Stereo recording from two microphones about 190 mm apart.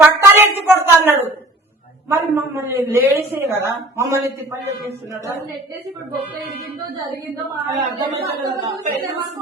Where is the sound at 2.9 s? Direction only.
10° right (ahead or behind).